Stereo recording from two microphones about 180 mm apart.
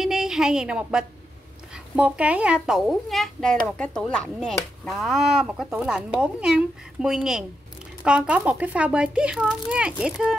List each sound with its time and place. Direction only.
0.0 s a woman's voice: centre (ahead or behind)